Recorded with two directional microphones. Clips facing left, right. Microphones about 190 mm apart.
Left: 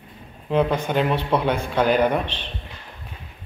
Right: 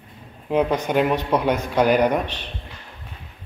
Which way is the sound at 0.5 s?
10° right (ahead or behind).